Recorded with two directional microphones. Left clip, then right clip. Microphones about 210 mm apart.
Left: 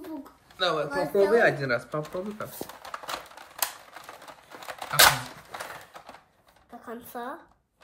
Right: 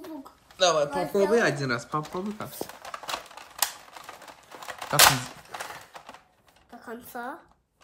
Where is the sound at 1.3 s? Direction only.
15° right (ahead or behind).